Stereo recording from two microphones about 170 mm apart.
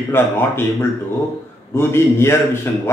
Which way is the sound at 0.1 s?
15° left (ahead or behind).